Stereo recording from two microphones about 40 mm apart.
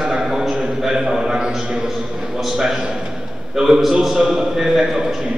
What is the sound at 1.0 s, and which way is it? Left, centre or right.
A man's voice, centre.